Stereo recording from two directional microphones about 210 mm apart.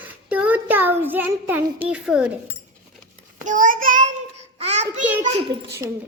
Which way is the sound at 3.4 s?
40° right (ahead or behind).